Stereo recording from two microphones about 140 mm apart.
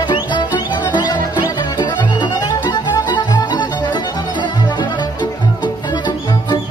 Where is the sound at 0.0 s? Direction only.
35° left (ahead or behind).